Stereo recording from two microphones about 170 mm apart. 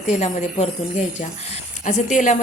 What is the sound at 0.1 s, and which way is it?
Speech, 45° left (ahead or behind).